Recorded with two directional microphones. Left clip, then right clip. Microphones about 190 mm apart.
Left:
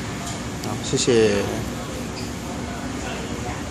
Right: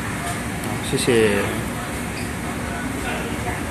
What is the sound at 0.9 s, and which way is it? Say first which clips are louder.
Speech: even; 20° left (ahead or behind).